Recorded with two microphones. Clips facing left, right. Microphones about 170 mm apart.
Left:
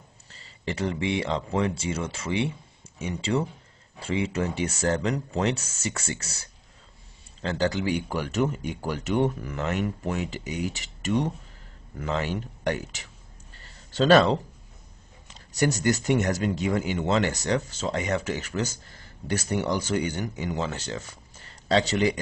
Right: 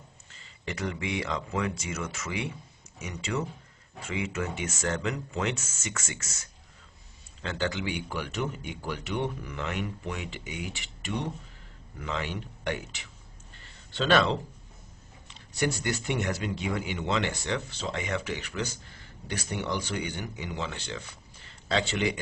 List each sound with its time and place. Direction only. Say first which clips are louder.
0.3 s speech: left 5 dB; 35° left (ahead or behind)
13.6 s a sound: left 7 dB; 40° left (ahead or behind)
15.2 s speech: left 4 dB; 45° left (ahead or behind)